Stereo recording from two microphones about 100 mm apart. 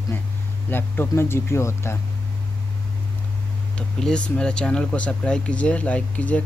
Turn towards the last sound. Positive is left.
turn(degrees=15)  # may be behind; listen again after turning